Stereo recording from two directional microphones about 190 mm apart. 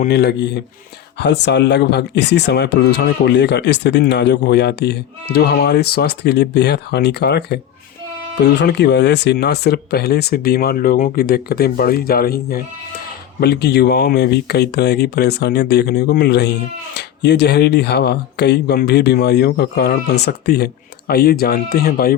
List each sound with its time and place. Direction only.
0.1 s speech: 60° left (ahead or behind)